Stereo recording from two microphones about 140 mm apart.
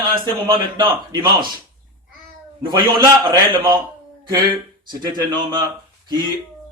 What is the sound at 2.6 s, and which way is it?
A man's voice, 35° right (ahead or behind).